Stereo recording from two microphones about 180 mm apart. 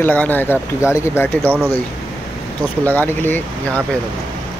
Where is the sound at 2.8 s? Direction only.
10° left (ahead or behind).